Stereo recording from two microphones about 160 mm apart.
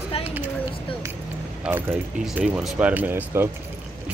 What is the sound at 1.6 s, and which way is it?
Speech, 10° right (ahead or behind).